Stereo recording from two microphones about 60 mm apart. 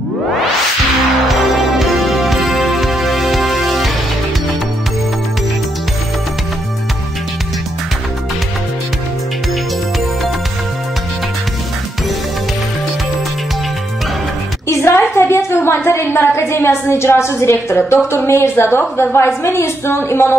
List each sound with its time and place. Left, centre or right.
1.8 s music: centre
14.7 s a woman's voice: left